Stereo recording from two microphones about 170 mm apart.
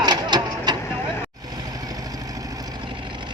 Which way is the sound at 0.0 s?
25° right (ahead or behind).